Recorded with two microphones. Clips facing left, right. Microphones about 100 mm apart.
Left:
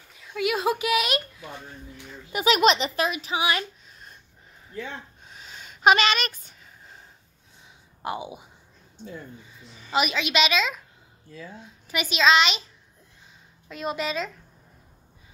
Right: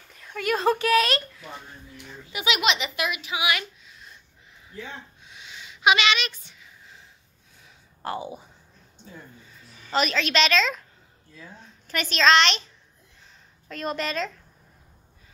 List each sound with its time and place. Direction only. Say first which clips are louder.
0.1 s speech: even; 5° left (ahead or behind)
2.3 s a woman's voice: left 5 dB; 40° left (ahead or behind)
5.2 s a sound: even; 40° left (ahead or behind)
7.6 s a sound: left 1 dB; 15° left (ahead or behind)
9.8 s a child's voice: even; 10° left (ahead or behind)
13.7 s a woman's voice: even; 5° left (ahead or behind)